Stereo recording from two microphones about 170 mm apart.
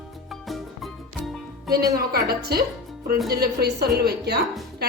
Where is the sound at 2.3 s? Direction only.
65° right (ahead or behind).